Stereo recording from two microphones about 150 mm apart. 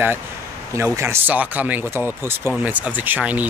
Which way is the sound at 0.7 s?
20° right (ahead or behind).